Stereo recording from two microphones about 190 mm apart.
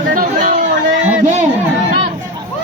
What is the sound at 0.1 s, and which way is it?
Chatter, 45° right (ahead or behind).